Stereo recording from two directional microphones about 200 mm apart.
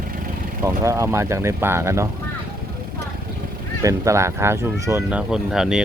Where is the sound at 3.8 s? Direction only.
15° right (ahead or behind).